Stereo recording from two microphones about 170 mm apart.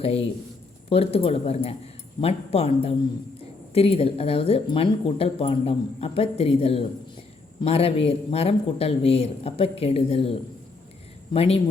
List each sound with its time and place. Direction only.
0.9 s speech: 35° left (ahead or behind)
11.3 s speech: 35° left (ahead or behind)